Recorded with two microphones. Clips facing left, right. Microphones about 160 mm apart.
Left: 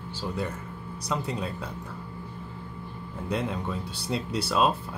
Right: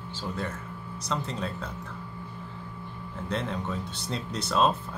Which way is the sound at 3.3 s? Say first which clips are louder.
Left 2 dB; 5° left (ahead or behind).